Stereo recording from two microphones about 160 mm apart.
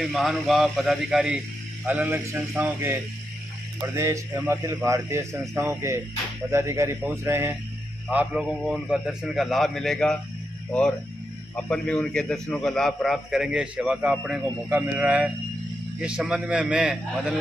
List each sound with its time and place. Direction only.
0.0 s a man's voice: centre (ahead or behind)
11.5 s a man's voice: 5° left (ahead or behind)